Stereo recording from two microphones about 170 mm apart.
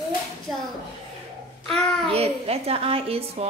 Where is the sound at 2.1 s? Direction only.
35° right (ahead or behind).